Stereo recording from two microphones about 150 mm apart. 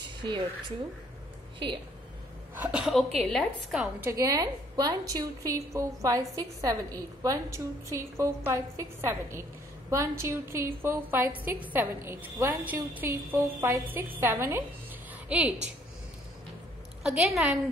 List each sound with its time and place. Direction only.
2.6 s a woman's voice: 5° right (ahead or behind)
4.0 s a woman's voice: 20° right (ahead or behind)
17.0 s a woman's voice: centre (ahead or behind)